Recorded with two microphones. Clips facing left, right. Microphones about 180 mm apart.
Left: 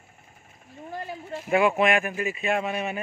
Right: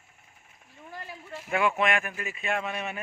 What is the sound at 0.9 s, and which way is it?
Speech, 25° left (ahead or behind).